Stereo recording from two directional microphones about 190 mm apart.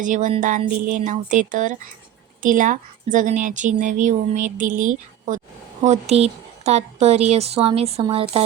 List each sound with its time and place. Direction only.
0.0 s speech: 40° right (ahead or behind)